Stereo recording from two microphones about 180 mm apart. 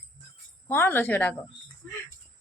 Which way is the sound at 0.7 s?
10° left (ahead or behind).